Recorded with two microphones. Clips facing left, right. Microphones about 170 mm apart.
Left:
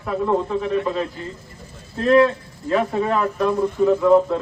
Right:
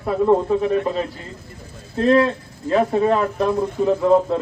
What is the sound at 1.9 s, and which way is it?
A man's voice, 30° right (ahead or behind).